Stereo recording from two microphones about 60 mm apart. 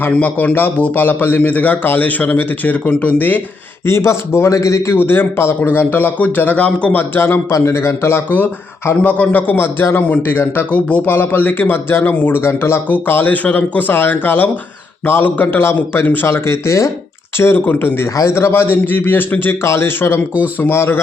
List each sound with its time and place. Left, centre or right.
0.0 s a man's voice: left
3.8 s speech: left
4.9 s a man's voice: left
6.9 s a man's voice: left
7.5 s speech: left
9.0 s a man's voice: left
10.8 s a man's voice: left
11.0 s a man's voice: left
12.9 s a man's voice: left
17.3 s a man's voice: left
18.2 s a man's voice: left